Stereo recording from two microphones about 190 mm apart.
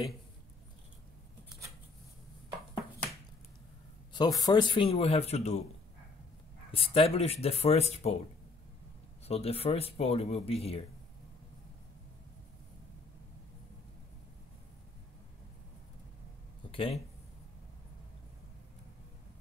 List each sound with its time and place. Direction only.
4.1 s speech: 20° left (ahead or behind)
6.7 s speech: 30° left (ahead or behind)
9.3 s speech: 30° left (ahead or behind)
16.7 s speech: 30° left (ahead or behind)